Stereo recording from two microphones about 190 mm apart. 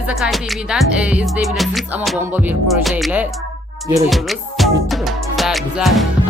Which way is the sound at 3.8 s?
15° right (ahead or behind).